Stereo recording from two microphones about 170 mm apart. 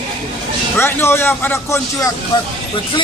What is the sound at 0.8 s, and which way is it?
Speech, 15° left (ahead or behind).